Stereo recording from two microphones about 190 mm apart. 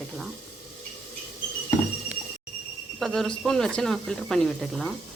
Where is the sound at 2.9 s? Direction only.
Centre (ahead or behind).